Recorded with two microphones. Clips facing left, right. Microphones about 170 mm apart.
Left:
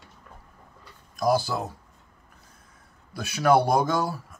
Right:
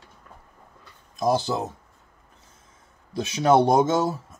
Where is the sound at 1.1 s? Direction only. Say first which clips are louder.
Right 1 dB; 20° right (ahead or behind).